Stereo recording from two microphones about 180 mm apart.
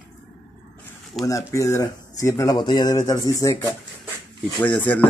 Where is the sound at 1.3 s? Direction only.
15° left (ahead or behind).